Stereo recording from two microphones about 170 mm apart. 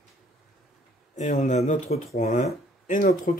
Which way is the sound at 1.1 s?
45° left (ahead or behind).